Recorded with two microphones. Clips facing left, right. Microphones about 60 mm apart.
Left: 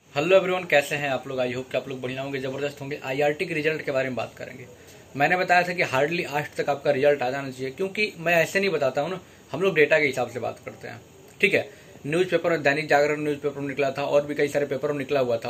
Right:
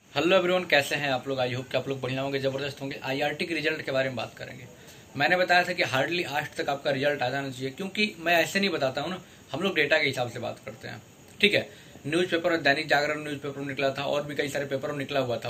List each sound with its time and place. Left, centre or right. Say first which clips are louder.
0.3 s speech: left 3 dB; left
1.7 s speech: left 1 dB; centre
2.3 s a man's voice: even; centre
12.1 s a man's voice: left 3 dB; left